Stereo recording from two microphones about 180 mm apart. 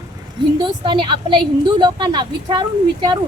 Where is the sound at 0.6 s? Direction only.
25° right (ahead or behind).